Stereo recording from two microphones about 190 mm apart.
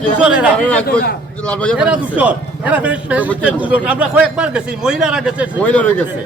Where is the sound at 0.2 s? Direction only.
5° right (ahead or behind).